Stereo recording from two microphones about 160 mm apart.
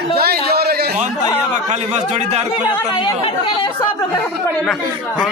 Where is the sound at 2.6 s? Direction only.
30° left (ahead or behind).